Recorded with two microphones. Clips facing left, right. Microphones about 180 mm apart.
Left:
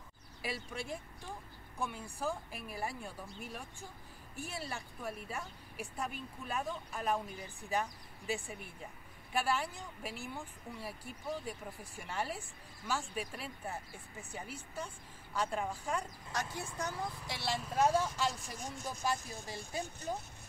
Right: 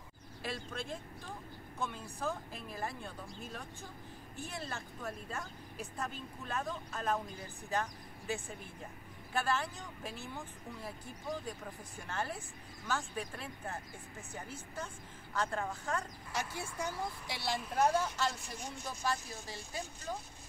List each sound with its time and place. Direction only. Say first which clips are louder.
0.4 s a woman's voice: even; 10° left (ahead or behind)
16.7 s a woman's voice: right 1 dB; centre (ahead or behind); by 20.2 s 15° left (ahead or behind)